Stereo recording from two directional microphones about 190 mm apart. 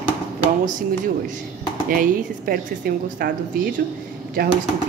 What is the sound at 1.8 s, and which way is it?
A woman's voice, 45° right (ahead or behind).